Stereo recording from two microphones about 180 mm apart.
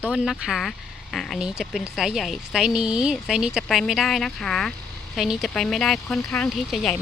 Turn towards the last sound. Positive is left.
turn(degrees=0)  # may be behind; listen again after turning